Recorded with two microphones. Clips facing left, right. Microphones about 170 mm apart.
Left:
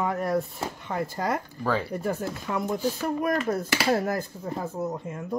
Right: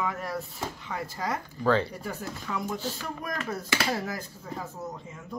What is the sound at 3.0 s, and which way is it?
Speech, 55° left (ahead or behind).